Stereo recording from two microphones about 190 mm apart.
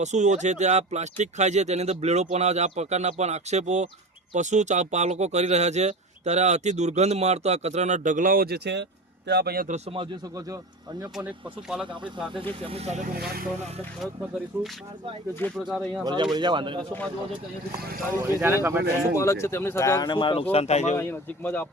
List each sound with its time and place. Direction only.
0.0 s speech: 40° right (ahead or behind)
9.7 s speech: 30° right (ahead or behind)
11.7 s speech: 5° right (ahead or behind)
12.6 s speech: 35° right (ahead or behind)
13.1 s speech: 50° right (ahead or behind)
14.0 s speech: centre (ahead or behind)
16.0 s speech: 20° right (ahead or behind)
18.2 s speech: 15° right (ahead or behind)
19.1 s speech: 15° left (ahead or behind); by 20.9 s 35° left (ahead or behind)
20.9 s speech: 10° left (ahead or behind)